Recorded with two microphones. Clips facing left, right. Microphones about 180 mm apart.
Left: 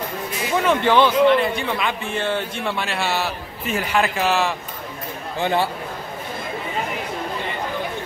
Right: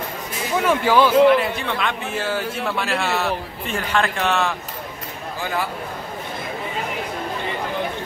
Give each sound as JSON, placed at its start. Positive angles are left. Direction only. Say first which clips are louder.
{"t": 0.6, "sound": "a man's voice", "louder": "even", "side_deg": -10}
{"t": 5.4, "sound": "speech", "louder": "left 5 dB", "side_deg": 25}